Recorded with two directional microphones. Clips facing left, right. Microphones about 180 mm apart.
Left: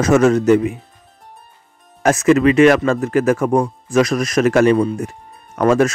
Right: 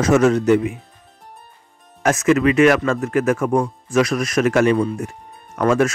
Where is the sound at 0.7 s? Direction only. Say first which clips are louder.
Left 1 dB; centre (ahead or behind).